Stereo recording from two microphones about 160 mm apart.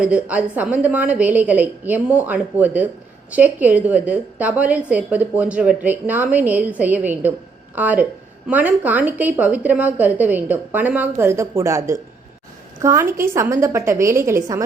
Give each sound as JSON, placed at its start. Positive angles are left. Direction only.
{"t": 0.0, "sound": "a woman's voice", "side_deg": -5}